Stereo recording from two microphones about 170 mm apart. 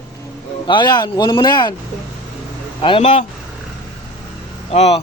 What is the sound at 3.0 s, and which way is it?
Speech, 45° left (ahead or behind).